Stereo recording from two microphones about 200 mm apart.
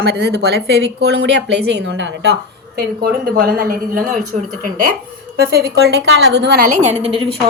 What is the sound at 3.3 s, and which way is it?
Speech, 50° right (ahead or behind).